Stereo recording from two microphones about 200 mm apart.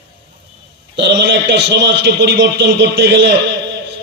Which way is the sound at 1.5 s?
60° right (ahead or behind).